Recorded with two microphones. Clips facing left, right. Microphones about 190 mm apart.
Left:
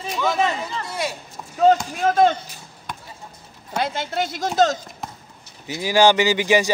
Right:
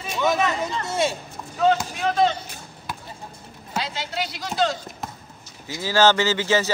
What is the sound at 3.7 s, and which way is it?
Speech, 50° left (ahead or behind).